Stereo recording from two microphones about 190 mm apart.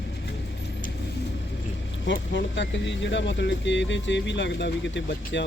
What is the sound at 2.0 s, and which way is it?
Speech, 70° left (ahead or behind).